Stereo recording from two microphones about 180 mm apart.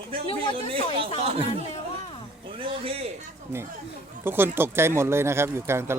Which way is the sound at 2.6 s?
30° right (ahead or behind).